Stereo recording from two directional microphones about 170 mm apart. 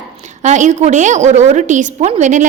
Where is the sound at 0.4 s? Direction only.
45° right (ahead or behind).